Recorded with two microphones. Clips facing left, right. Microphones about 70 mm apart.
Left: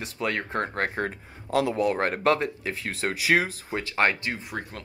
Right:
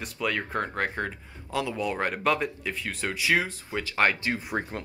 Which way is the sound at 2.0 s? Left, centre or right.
Left.